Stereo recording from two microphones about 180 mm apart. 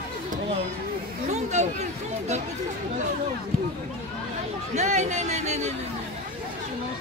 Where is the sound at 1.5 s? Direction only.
40° right (ahead or behind).